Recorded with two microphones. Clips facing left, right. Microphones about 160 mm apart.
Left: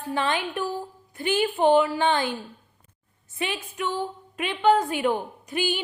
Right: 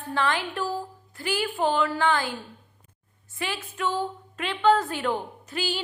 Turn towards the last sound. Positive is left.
turn(degrees=20)  # may be behind; listen again after turning